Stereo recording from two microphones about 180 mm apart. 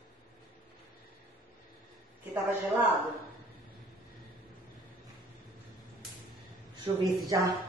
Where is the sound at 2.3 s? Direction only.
10° right (ahead or behind).